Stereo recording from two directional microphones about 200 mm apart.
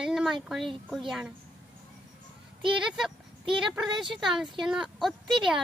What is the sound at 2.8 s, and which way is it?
A child's voice, 5° right (ahead or behind).